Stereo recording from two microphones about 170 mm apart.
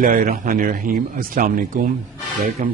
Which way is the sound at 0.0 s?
55° right (ahead or behind).